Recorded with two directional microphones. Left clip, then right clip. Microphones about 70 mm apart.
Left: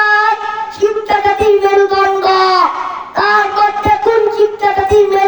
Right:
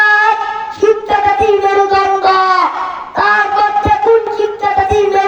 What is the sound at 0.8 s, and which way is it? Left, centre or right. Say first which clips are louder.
Music: right 1 dB; right.